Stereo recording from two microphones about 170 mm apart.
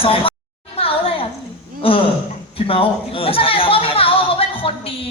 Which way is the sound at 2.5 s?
35° left (ahead or behind).